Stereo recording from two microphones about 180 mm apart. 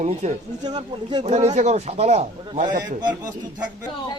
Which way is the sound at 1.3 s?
40° right (ahead or behind).